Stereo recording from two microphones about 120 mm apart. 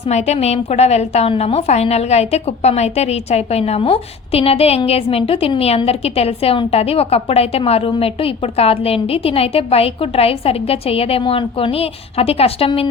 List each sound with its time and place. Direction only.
0.1 s a woman's voice: 70° left (ahead or behind)
1.3 s a woman's voice: 55° left (ahead or behind)